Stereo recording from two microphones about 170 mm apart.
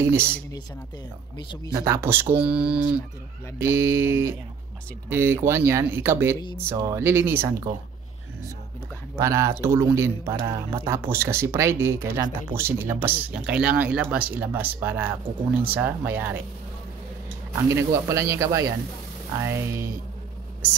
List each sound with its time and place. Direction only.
0.0 s speech: 15° right (ahead or behind)
1.9 s speech: 15° right (ahead or behind)
9.1 s speech: 15° right (ahead or behind)
17.6 s speech: 20° right (ahead or behind)